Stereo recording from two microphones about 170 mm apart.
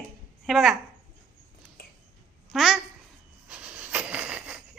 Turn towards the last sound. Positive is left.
turn(degrees=-5)  # may be behind; listen again after turning